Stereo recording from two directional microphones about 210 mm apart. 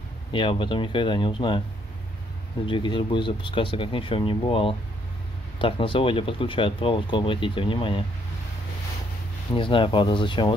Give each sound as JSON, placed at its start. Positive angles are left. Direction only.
{"t": 0.3, "sound": "speech", "side_deg": 25}
{"t": 2.6, "sound": "speech", "side_deg": 25}
{"t": 9.5, "sound": "speech", "side_deg": 25}